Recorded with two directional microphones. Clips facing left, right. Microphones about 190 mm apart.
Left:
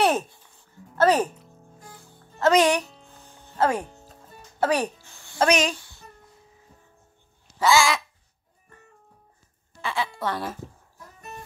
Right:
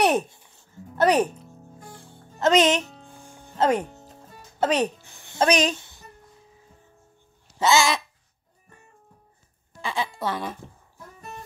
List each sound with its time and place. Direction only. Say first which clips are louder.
0.0 s music: right 1 dB; 15° right (ahead or behind)
0.9 s speech: even; 15° right (ahead or behind)
2.0 s music: even; 30° right (ahead or behind)
5.7 s a sound: right 2 dB; 20° right (ahead or behind)
7.5 s a sound: even; 20° right (ahead or behind)
9.8 s speech: even; 15° right (ahead or behind)
10.3 s speech: even; 5° left (ahead or behind)